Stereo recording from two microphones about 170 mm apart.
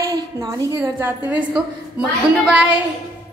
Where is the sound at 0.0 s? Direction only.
20° right (ahead or behind).